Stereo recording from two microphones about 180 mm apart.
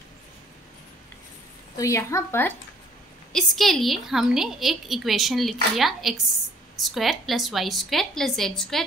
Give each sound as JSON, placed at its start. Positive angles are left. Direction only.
{"t": 1.8, "sound": "a woman's voice", "side_deg": 15}
{"t": 3.3, "sound": "a woman's voice", "side_deg": 0}